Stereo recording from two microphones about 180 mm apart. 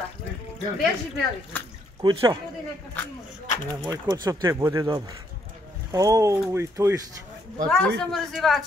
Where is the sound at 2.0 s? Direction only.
25° right (ahead or behind).